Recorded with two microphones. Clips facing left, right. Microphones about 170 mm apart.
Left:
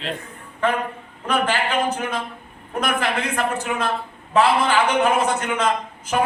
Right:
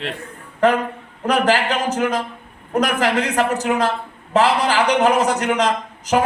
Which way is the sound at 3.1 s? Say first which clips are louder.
Right 5 dB; 40° right (ahead or behind).